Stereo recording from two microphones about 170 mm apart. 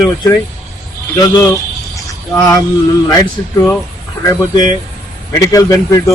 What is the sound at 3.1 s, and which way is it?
Speech, 20° left (ahead or behind).